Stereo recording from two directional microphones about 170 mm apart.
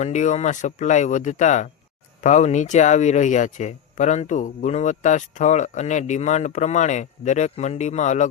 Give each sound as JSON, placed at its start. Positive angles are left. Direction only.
{"t": 0.0, "sound": "speech", "side_deg": 45}